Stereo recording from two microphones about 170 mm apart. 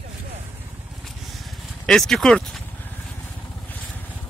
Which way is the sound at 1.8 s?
5° left (ahead or behind).